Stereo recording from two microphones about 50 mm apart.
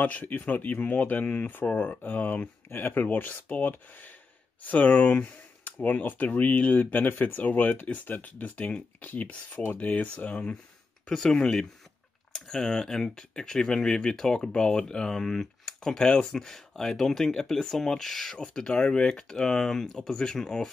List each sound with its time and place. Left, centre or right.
0.0 s speech: left
2.0 s speech: left
5.1 s a sound: left
5.9 s speech: left
11.1 s speech: centre